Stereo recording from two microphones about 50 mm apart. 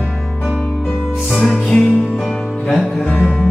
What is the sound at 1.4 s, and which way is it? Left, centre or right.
Music, centre.